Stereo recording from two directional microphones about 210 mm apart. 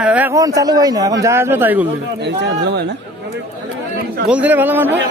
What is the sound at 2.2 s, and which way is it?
Speech, 55° right (ahead or behind).